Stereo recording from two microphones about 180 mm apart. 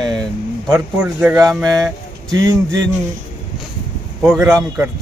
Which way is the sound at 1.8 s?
20° right (ahead or behind).